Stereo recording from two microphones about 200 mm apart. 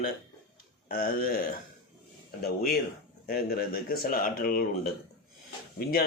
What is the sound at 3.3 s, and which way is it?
Speech, 50° left (ahead or behind).